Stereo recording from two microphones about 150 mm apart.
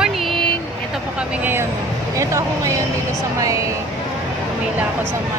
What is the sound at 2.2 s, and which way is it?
Speech, 20° right (ahead or behind).